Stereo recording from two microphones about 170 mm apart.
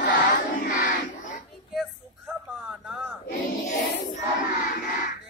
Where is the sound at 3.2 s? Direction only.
55° left (ahead or behind).